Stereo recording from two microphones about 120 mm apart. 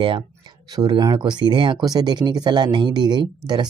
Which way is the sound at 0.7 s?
35° right (ahead or behind).